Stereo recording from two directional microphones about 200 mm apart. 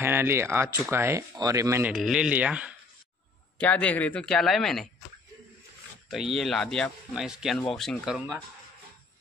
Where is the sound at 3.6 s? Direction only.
5° left (ahead or behind).